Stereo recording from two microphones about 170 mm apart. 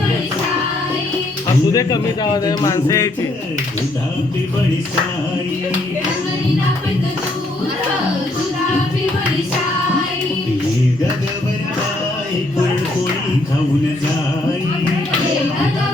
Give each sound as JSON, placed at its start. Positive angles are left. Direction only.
{"t": 1.7, "sound": "a man's voice", "side_deg": 25}